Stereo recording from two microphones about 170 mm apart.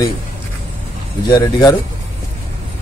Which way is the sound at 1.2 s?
25° left (ahead or behind).